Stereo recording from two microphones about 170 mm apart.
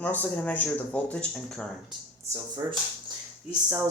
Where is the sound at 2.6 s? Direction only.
20° right (ahead or behind).